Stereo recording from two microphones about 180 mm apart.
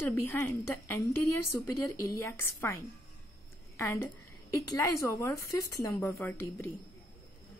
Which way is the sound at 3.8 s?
15° left (ahead or behind).